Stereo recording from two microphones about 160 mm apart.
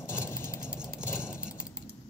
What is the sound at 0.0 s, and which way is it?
Vehicle, 15° left (ahead or behind).